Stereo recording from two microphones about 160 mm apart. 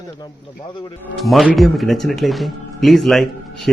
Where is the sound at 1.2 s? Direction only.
Centre (ahead or behind).